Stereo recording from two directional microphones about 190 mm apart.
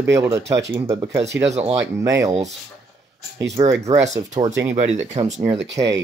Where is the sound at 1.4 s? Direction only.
35° right (ahead or behind).